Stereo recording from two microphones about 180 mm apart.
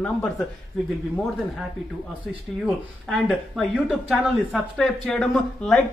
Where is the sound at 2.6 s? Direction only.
Centre (ahead or behind).